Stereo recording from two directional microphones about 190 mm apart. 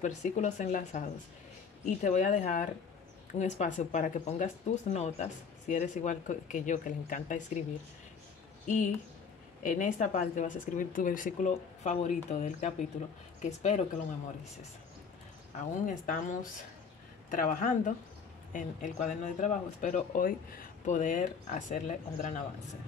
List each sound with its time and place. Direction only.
0.0 s speech: 40° left (ahead or behind)
8.6 s speech: 40° left (ahead or behind)
15.8 s speech: 45° left (ahead or behind)